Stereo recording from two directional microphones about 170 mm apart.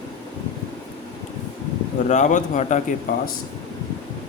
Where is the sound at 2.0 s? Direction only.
45° left (ahead or behind).